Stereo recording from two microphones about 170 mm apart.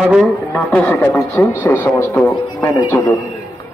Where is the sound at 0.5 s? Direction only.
10° left (ahead or behind).